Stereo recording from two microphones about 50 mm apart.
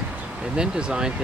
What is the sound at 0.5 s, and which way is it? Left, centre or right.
Speech, centre.